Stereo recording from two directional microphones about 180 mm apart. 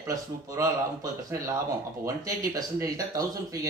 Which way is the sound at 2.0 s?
20° right (ahead or behind).